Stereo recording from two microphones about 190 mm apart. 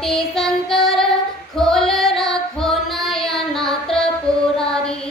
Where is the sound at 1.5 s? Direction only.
Centre (ahead or behind).